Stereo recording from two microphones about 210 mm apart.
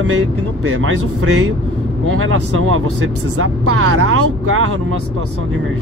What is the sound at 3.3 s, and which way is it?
Speech, 90° right.